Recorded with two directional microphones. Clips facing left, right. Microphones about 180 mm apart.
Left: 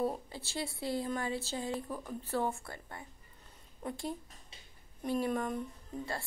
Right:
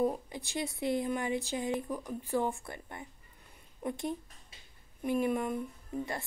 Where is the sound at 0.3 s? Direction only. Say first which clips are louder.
Right 3 dB; 15° right (ahead or behind).